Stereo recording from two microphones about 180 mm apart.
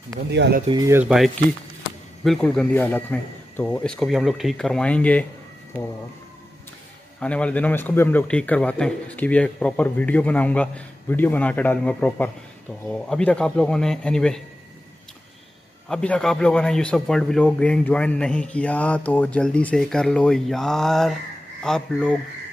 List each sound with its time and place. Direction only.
0.3 s speech: 70° right (ahead or behind)
0.7 s speech: 20° right (ahead or behind)
0.9 s a man's voice: centre (ahead or behind)
7.2 s a man's voice: 5° left (ahead or behind)
15.9 s a man's voice: 5° left (ahead or behind)